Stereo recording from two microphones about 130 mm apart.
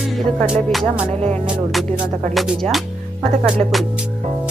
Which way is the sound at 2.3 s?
Centre (ahead or behind).